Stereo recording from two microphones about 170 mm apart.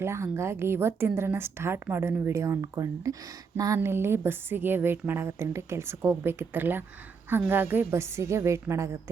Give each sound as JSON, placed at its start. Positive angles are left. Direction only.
{"t": 0.0, "sound": "a woman's voice", "side_deg": -15}